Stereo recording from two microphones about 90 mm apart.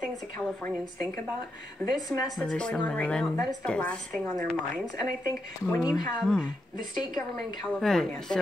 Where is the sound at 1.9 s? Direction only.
45° left (ahead or behind).